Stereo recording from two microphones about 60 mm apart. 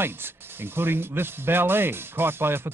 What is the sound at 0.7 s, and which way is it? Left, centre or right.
A man's voice, right.